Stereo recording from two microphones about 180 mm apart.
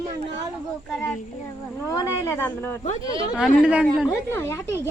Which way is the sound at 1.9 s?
20° left (ahead or behind).